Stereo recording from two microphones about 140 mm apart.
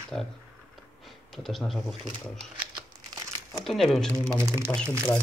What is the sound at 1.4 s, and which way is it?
Speech, centre (ahead or behind).